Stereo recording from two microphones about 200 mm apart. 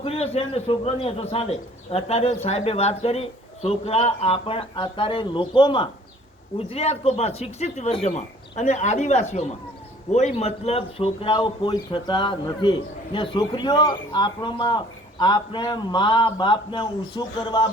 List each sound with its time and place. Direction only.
0.0 s a man's voice: 30° left (ahead or behind)